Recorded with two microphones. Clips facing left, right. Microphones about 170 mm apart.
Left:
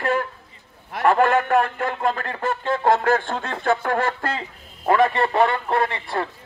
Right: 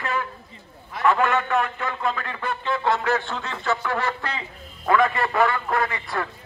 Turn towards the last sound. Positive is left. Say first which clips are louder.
# left 3 dB
turn(degrees=30)  # may be behind; listen again after turning